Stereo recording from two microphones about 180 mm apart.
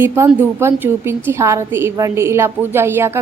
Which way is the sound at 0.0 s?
15° right (ahead or behind).